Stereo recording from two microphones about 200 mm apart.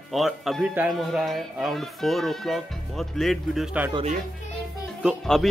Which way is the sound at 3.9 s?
35° right (ahead or behind).